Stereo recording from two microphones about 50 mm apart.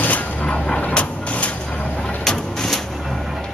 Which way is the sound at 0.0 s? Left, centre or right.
Left.